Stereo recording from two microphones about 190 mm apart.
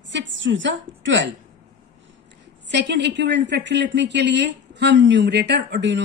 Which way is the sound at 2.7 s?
65° right (ahead or behind).